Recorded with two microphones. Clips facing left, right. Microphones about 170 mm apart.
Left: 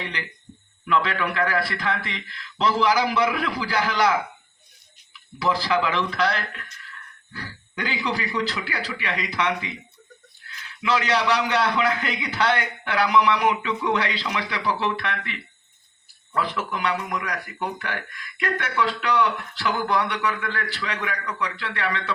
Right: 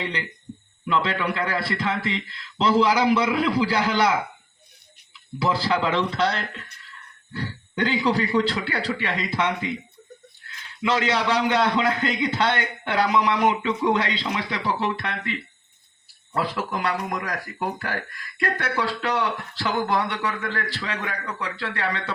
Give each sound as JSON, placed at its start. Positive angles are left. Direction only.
{"t": 0.9, "sound": "speech", "side_deg": -30}
{"t": 5.4, "sound": "speech", "side_deg": -30}
{"t": 10.8, "sound": "speech", "side_deg": -25}
{"t": 16.3, "sound": "speech", "side_deg": -35}